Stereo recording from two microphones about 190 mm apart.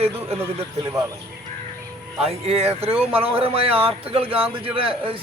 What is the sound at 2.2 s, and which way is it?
Speech, 30° right (ahead or behind).